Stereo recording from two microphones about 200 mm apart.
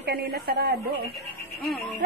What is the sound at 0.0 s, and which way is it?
Speech, 55° right (ahead or behind).